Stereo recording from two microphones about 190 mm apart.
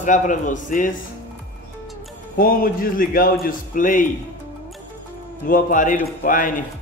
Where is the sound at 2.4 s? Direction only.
50° left (ahead or behind).